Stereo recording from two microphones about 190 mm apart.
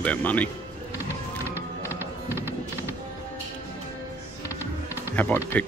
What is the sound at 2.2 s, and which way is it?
Music, 10° right (ahead or behind).